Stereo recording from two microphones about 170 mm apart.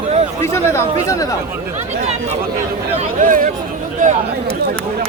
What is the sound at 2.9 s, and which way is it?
Speech, 50° right (ahead or behind).